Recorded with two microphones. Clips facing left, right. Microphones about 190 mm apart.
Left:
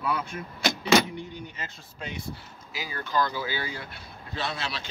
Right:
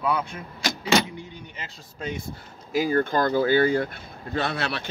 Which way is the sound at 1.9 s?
45° right (ahead or behind).